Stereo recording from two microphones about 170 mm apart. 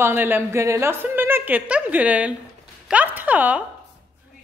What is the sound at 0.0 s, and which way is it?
A woman's voice, 10° right (ahead or behind).